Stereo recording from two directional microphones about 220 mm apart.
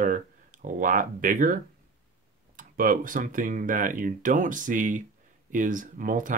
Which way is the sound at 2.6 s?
40° right (ahead or behind).